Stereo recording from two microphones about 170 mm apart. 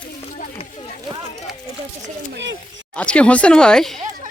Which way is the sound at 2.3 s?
90° right.